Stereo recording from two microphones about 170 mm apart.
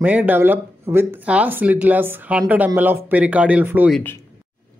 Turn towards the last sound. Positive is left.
turn(degrees=-10)  # may be behind; listen again after turning